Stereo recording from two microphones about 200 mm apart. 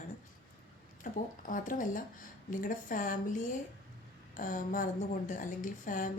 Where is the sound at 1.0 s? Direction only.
40° left (ahead or behind).